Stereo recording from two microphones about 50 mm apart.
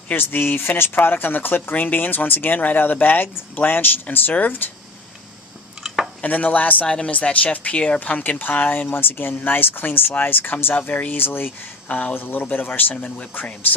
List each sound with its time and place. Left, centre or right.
0.1 s speech: left
6.2 s speech: left
6.8 s speech: centre
7.4 s speech: left
8.9 s speech: left
11.9 s speech: left
12.1 s speech: left
12.9 s speech: left